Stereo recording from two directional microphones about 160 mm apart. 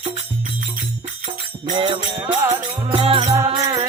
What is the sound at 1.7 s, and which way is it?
Music, 30° right (ahead or behind).